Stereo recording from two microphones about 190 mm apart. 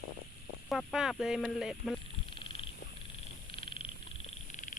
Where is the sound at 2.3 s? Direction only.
25° left (ahead or behind).